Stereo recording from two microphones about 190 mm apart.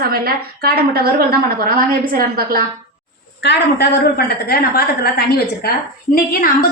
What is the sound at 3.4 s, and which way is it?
A woman's voice, 65° left (ahead or behind).